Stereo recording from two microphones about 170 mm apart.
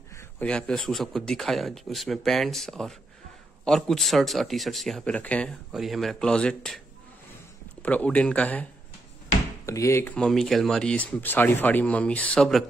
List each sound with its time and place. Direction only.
0.4 s speech: 5° left (ahead or behind)
7.8 s speech: 10° left (ahead or behind)
9.7 s speech: 15° left (ahead or behind)
10.1 s speech: 5° left (ahead or behind)